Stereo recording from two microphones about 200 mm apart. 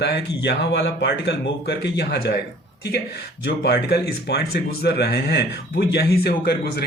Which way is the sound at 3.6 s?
55° left (ahead or behind).